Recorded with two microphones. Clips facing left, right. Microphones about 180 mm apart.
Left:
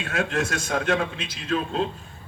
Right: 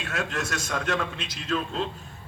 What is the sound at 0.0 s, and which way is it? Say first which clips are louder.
A man's voice: left 5 dB; 55° left (ahead or behind).